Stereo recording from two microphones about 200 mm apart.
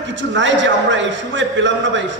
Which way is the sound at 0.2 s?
65° right (ahead or behind).